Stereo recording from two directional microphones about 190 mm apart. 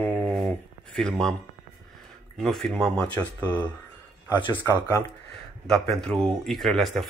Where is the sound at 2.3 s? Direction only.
Centre (ahead or behind).